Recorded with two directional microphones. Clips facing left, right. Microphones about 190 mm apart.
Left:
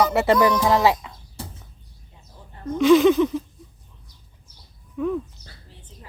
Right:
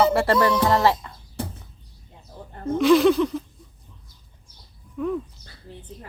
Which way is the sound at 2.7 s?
Centre (ahead or behind).